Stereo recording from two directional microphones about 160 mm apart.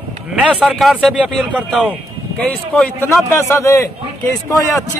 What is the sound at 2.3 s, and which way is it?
A man's voice, 10° left (ahead or behind).